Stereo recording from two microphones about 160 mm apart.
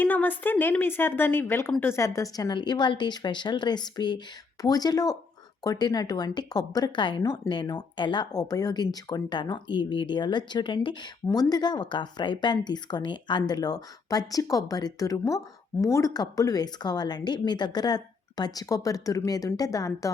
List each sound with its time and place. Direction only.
0.0 s speech: 10° left (ahead or behind)